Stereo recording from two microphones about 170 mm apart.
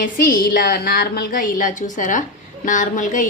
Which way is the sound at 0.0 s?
55° left (ahead or behind).